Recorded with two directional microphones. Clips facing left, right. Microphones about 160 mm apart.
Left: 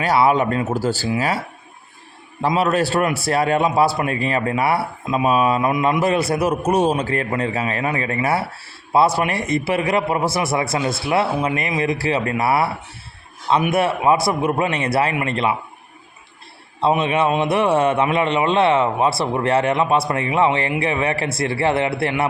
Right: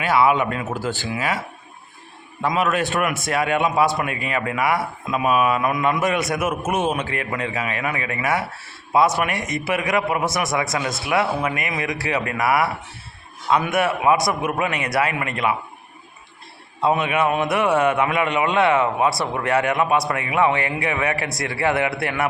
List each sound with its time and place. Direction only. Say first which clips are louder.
0.0 s a man's voice: left 2 dB; 35° left (ahead or behind)
2.4 s a man's voice: left 3 dB; 35° left (ahead or behind)
16.8 s a man's voice: left 2 dB; 30° left (ahead or behind)